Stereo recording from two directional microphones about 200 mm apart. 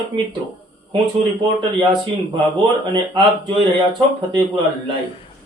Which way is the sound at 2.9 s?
25° right (ahead or behind).